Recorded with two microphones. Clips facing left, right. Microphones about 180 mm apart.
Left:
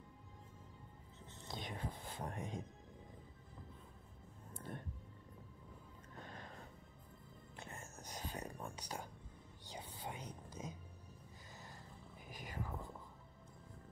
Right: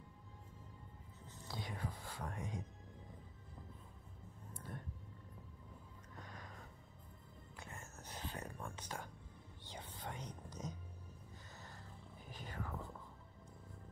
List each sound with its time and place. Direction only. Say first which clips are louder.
1.2 s speech: even; 20° left (ahead or behind)
6.2 s music: left 3 dB; 30° left (ahead or behind)
9.7 s whispering: left 1 dB; 10° left (ahead or behind)
12.3 s whispering: left 1 dB; 10° left (ahead or behind)